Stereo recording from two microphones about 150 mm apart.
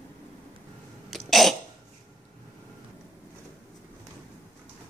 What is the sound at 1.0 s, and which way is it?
Throat clearing, centre (ahead or behind).